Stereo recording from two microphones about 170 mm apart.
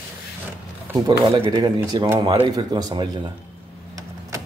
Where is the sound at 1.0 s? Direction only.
30° right (ahead or behind).